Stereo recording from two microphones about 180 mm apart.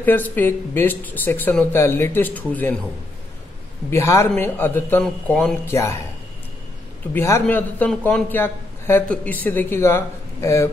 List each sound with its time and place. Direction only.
0.0 s a man's voice: 10° left (ahead or behind)
3.9 s a man's voice: 15° left (ahead or behind)
5.7 s a man's voice: 15° left (ahead or behind)
7.2 s a man's voice: 15° left (ahead or behind)